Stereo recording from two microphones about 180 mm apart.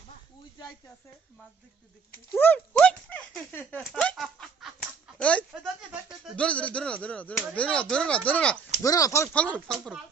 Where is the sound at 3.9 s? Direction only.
Centre (ahead or behind).